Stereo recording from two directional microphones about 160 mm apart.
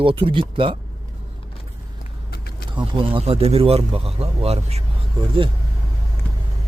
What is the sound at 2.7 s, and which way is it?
Speech, 30° right (ahead or behind).